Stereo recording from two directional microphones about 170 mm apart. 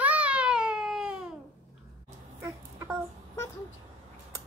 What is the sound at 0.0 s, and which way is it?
Baby cry, 10° right (ahead or behind).